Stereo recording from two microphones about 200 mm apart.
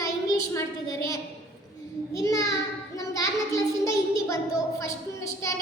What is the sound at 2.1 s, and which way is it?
Child singing, 15° left (ahead or behind).